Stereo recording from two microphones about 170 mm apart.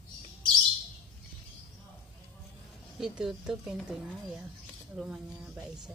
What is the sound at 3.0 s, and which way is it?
Speech, centre (ahead or behind).